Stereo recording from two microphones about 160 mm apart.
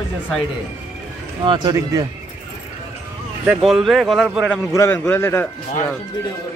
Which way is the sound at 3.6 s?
Centre (ahead or behind).